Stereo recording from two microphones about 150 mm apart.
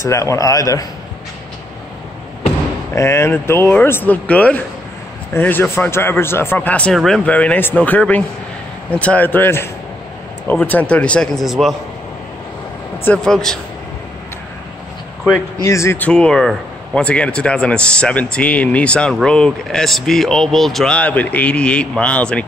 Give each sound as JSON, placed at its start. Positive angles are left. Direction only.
{"t": 0.0, "sound": "a man's voice", "side_deg": 20}
{"t": 2.9, "sound": "a man's voice", "side_deg": 20}
{"t": 7.2, "sound": "speech", "side_deg": 10}
{"t": 13.0, "sound": "a man's voice", "side_deg": 5}
{"t": 15.6, "sound": "speech", "side_deg": 20}